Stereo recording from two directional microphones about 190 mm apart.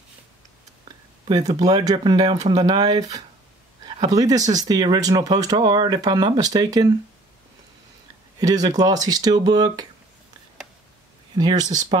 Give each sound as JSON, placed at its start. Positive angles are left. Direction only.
{"t": 1.2, "sound": "speech", "side_deg": -25}
{"t": 8.4, "sound": "speech", "side_deg": -20}
{"t": 11.3, "sound": "speech", "side_deg": -20}